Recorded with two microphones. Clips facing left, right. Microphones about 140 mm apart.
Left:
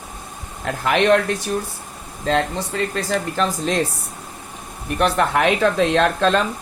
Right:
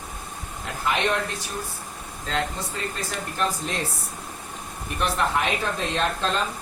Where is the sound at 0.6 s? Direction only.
90° left.